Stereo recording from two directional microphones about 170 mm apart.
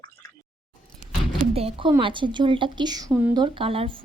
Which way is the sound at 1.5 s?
35° right (ahead or behind).